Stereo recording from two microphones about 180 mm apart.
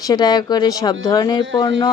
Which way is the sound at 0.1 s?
20° left (ahead or behind).